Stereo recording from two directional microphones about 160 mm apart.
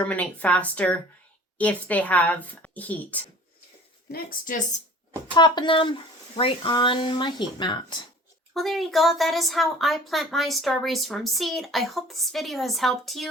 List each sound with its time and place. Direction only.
0.0 s speech: 10° left (ahead or behind)
4.1 s a woman's voice: 60° left (ahead or behind)
5.3 s speech: 30° left (ahead or behind)
8.5 s speech: centre (ahead or behind)